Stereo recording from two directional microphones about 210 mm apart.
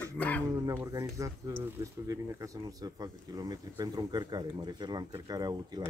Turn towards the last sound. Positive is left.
turn(degrees=-20)  # may be behind; listen again after turning